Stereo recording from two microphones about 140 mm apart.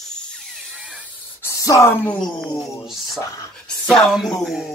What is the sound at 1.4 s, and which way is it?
Speech, 25° left (ahead or behind).